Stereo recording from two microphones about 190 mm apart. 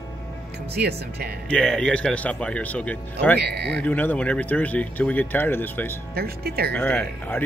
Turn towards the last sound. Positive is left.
turn(degrees=10)  # may be behind; listen again after turning